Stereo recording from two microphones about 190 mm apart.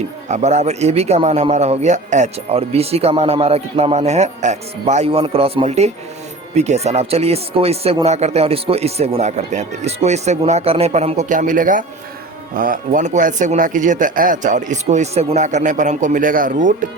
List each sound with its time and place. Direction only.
0.3 s a man's voice: 35° right (ahead or behind)